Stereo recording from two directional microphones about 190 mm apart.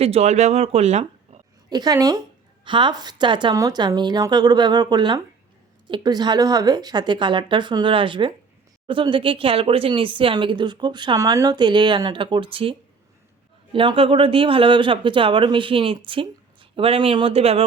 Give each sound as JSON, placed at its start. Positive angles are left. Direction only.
{"t": 0.0, "sound": "speech", "side_deg": -35}
{"t": 1.7, "sound": "speech", "side_deg": -20}
{"t": 13.7, "sound": "speech", "side_deg": -30}